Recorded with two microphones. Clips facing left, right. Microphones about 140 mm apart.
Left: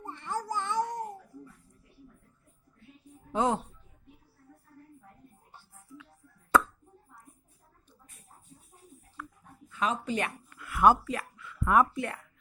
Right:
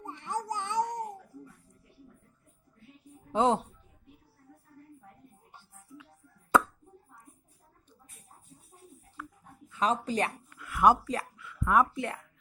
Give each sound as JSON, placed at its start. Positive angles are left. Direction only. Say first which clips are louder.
{"t": 0.0, "sound": "babbling", "louder": "even", "side_deg": -15}
{"t": 3.3, "sound": "speech", "louder": "right 2 dB", "side_deg": -25}
{"t": 9.2, "sound": "dog", "louder": "even", "side_deg": -5}
{"t": 9.6, "sound": "speech", "louder": "right 2 dB", "side_deg": -30}
{"t": 10.6, "sound": "a sound", "louder": "left 1 dB", "side_deg": 0}
{"t": 11.0, "sound": "speech", "louder": "right 1 dB", "side_deg": -35}
{"t": 11.3, "sound": "a sound", "louder": "left 1 dB", "side_deg": 0}
{"t": 11.9, "sound": "speech", "louder": "even", "side_deg": -25}